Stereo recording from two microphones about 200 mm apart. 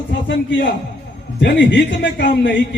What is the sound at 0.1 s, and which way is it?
A man's voice, 65° left (ahead or behind).